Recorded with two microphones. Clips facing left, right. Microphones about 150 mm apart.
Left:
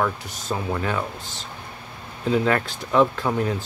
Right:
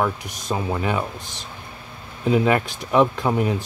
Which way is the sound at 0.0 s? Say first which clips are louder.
Right 1 dB; 15° right (ahead or behind).